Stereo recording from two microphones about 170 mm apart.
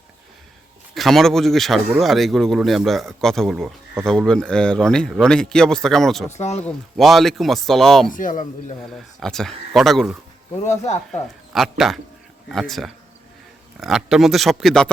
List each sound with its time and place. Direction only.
0.9 s speech: centre (ahead or behind)
6.3 s speech: 40° left (ahead or behind)
6.7 s speech: centre (ahead or behind)
8.1 s a man's voice: 50° left (ahead or behind)
8.9 s speech: centre (ahead or behind)
10.7 s a man's voice: 40° left (ahead or behind)
11.5 s speech: centre (ahead or behind)